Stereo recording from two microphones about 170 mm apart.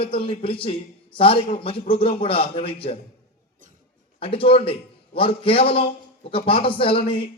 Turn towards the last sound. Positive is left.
turn(degrees=30)  # may be behind; listen again after turning